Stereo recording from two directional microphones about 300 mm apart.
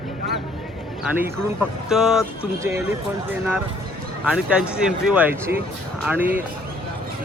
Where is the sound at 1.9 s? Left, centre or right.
Centre.